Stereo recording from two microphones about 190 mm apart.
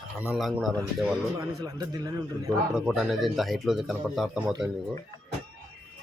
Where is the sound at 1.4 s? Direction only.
20° right (ahead or behind).